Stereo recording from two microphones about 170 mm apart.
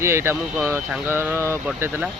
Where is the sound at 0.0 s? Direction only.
15° right (ahead or behind).